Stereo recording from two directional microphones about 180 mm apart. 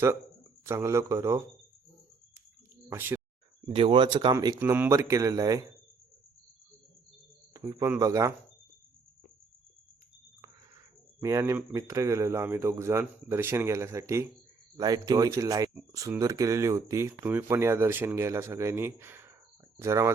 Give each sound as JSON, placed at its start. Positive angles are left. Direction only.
{"t": 0.6, "sound": "speech", "side_deg": -15}
{"t": 2.9, "sound": "speech", "side_deg": -10}
{"t": 3.7, "sound": "speech", "side_deg": -30}
{"t": 7.5, "sound": "speech", "side_deg": -15}
{"t": 11.2, "sound": "speech", "side_deg": -15}